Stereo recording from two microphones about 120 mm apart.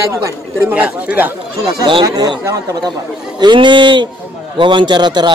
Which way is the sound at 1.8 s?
40° right (ahead or behind).